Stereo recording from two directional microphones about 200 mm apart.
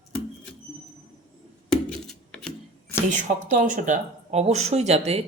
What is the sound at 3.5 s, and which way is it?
Speech, 40° right (ahead or behind).